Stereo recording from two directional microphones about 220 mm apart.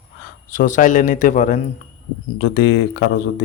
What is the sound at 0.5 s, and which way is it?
Speech, 35° left (ahead or behind).